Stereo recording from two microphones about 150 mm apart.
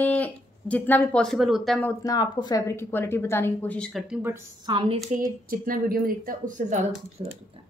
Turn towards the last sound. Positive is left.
turn(degrees=-45)  # may be behind; listen again after turning